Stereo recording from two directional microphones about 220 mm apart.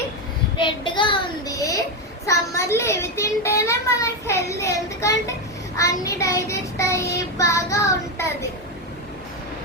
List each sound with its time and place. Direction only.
0.5 s child singing: 20° left (ahead or behind)
2.2 s a child's voice: 15° left (ahead or behind)